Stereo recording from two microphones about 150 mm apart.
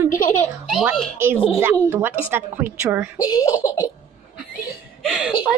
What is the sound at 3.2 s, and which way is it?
Speech, 25° left (ahead or behind).